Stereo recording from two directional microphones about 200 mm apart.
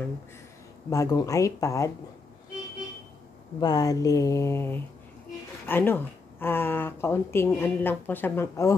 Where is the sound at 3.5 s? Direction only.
20° left (ahead or behind).